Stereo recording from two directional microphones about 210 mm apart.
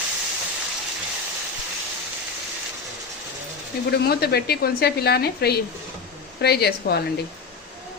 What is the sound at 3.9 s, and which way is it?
Speech, 50° left (ahead or behind).